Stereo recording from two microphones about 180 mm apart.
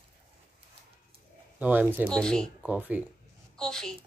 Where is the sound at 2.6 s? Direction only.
10° right (ahead or behind).